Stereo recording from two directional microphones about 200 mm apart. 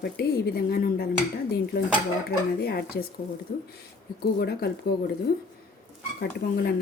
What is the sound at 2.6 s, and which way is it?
Speech, 50° left (ahead or behind).